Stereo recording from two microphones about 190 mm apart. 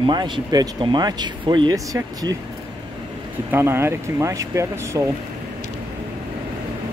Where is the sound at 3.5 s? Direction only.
10° right (ahead or behind).